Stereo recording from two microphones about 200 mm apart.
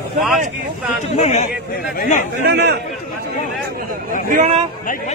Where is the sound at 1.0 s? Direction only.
35° left (ahead or behind).